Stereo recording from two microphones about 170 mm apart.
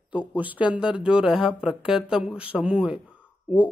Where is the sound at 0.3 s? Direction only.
10° right (ahead or behind).